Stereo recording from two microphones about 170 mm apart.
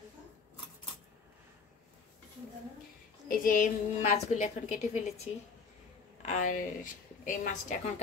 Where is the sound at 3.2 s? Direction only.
55° left (ahead or behind).